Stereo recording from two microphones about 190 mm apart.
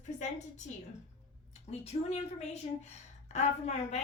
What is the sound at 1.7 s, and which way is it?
A woman's voice, 35° left (ahead or behind).